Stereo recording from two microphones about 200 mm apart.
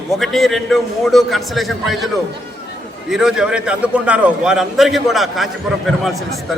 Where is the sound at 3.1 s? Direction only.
Centre (ahead or behind).